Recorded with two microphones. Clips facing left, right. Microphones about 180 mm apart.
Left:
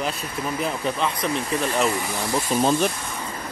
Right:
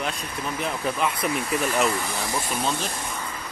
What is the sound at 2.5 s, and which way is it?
Speech, 35° left (ahead or behind).